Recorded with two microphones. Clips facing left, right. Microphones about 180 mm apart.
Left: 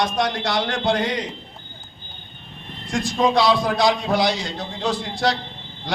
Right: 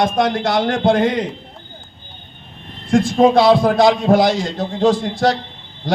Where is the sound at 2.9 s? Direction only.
55° right (ahead or behind).